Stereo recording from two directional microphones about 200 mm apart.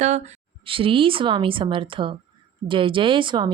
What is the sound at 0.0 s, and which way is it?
A woman's voice, 35° right (ahead or behind).